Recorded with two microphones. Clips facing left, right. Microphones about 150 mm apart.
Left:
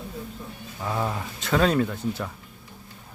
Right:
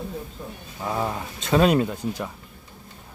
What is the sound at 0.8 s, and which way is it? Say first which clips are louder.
Speech: right 1 dB; 10° right (ahead or behind).